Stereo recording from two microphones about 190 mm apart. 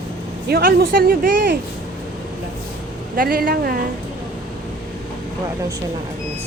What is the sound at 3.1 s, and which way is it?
Speech, 50° right (ahead or behind).